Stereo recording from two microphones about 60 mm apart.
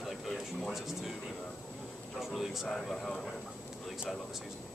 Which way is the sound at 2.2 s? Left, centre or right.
Centre.